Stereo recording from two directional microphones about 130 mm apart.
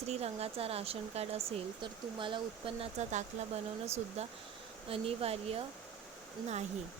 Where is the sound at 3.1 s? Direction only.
65° right (ahead or behind).